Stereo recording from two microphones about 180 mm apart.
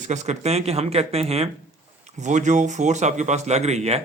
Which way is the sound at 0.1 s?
40° right (ahead or behind).